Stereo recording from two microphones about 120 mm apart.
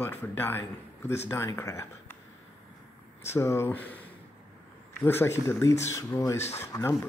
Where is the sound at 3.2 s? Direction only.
20° left (ahead or behind).